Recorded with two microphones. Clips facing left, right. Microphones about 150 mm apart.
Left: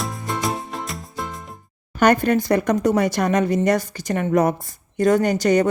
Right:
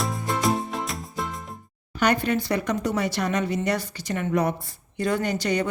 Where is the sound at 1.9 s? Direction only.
45° left (ahead or behind).